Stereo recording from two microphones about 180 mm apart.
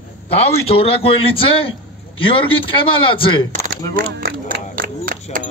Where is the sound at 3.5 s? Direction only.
50° right (ahead or behind).